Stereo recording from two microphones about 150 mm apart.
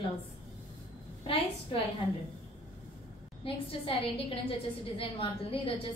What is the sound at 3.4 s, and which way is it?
A woman's voice, 40° left (ahead or behind).